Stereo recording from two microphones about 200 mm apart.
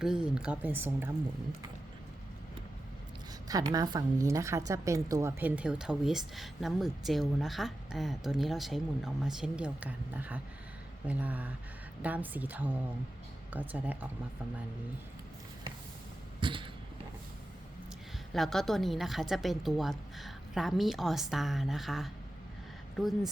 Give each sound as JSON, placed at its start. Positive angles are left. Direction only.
{"t": 0.0, "sound": "a woman's voice", "side_deg": -5}
{"t": 3.5, "sound": "a woman's voice", "side_deg": -20}
{"t": 16.4, "sound": "a sound", "side_deg": -25}
{"t": 18.3, "sound": "a woman's voice", "side_deg": 0}